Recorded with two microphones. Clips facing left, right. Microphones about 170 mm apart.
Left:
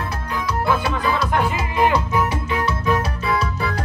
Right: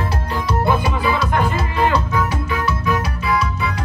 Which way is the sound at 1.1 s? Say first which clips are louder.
Right 1 dB; centre (ahead or behind).